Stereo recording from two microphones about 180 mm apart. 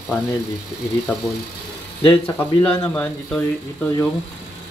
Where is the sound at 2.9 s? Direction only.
10° left (ahead or behind).